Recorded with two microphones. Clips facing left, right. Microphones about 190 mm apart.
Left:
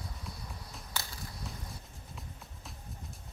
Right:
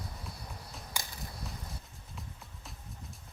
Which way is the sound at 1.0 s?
15° right (ahead or behind).